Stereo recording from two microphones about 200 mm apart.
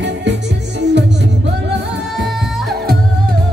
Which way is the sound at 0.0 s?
60° right (ahead or behind).